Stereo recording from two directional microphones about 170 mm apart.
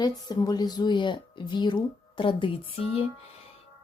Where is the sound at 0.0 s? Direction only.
25° left (ahead or behind).